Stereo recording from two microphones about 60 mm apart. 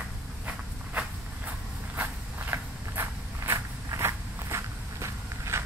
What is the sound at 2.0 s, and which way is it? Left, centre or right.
Walk, right.